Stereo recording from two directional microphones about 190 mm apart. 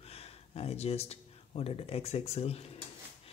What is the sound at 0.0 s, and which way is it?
Speech, 30° left (ahead or behind).